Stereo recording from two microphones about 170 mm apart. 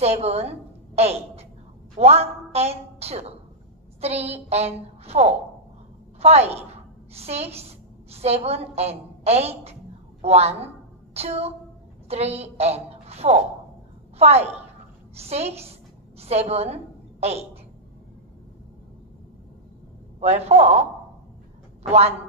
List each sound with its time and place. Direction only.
0.0 s a woman's voice: 40° right (ahead or behind)
20.2 s a woman's voice: 40° right (ahead or behind)